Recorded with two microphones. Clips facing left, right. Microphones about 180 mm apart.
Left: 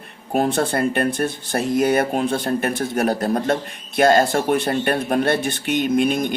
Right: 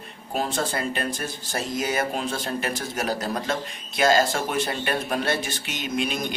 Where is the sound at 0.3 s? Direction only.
60° left (ahead or behind).